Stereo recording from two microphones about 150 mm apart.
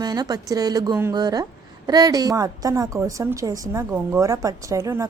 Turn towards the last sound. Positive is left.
turn(degrees=-20)  # may be behind; listen again after turning